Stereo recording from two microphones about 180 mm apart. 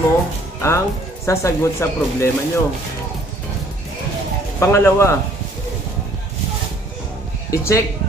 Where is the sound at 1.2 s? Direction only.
15° left (ahead or behind).